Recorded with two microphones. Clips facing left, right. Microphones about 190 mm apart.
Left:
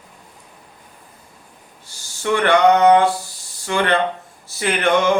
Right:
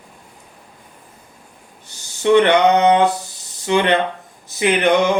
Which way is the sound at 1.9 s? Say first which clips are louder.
Right 7 dB; 20° right (ahead or behind).